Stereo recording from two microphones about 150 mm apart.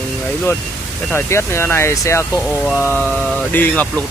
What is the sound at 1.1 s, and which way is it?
Speech, 15° left (ahead or behind).